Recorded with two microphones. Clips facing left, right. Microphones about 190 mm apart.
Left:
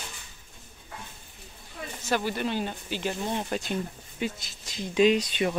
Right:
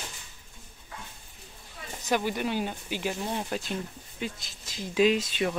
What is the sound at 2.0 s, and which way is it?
Speech, 15° right (ahead or behind).